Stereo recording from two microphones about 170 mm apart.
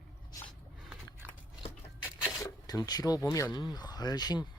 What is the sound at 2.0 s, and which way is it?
Speech, 20° left (ahead or behind).